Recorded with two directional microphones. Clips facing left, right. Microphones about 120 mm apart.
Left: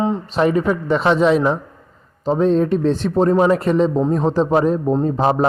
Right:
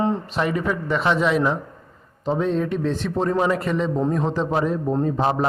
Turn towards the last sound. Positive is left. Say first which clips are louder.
# left 4 dB
turn(degrees=30)  # may be behind; listen again after turning